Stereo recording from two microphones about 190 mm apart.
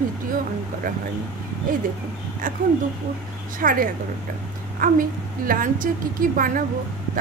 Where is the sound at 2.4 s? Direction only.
45° right (ahead or behind).